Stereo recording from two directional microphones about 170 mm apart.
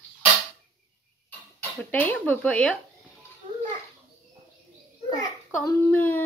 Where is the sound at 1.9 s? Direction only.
10° left (ahead or behind).